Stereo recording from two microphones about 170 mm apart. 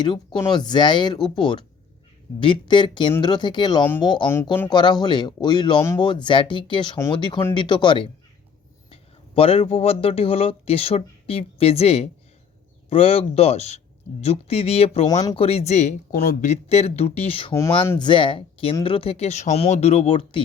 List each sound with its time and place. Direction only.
0.0 s speech: 25° left (ahead or behind)